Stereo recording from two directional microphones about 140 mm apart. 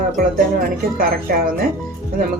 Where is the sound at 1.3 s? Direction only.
90° right.